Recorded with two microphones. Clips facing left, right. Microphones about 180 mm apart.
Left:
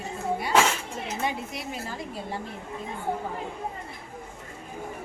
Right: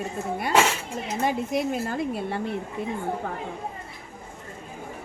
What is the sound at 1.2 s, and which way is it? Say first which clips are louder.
Speech: right 9 dB; 50° right (ahead or behind).